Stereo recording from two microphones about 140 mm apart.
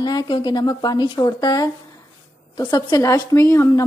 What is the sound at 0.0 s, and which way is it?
Speech, 30° left (ahead or behind).